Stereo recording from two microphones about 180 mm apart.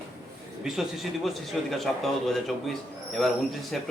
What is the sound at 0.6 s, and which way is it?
A man's voice, centre (ahead or behind).